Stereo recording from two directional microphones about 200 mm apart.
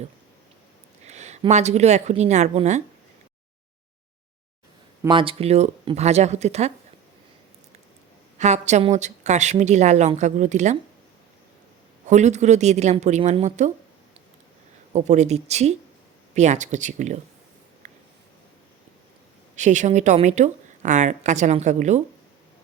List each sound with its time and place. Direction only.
1.0 s a woman's voice: 35° right (ahead or behind)
5.0 s a woman's voice: 25° right (ahead or behind)
8.4 s a woman's voice: 35° right (ahead or behind)
12.0 s a woman's voice: 35° right (ahead or behind)
14.9 s a woman's voice: 35° right (ahead or behind)
17.8 s a sound: 35° right (ahead or behind)
19.5 s a woman's voice: 35° right (ahead or behind)